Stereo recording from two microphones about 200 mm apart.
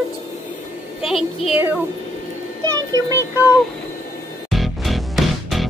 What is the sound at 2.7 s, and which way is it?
Speech, 15° right (ahead or behind).